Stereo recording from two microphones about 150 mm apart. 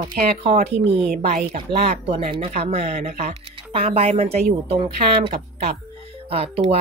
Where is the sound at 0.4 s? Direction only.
45° right (ahead or behind).